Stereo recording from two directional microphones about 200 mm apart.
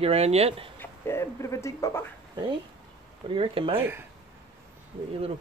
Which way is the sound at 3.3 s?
25° right (ahead or behind).